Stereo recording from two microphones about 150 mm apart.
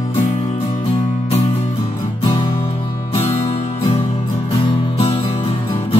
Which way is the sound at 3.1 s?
45° left (ahead or behind).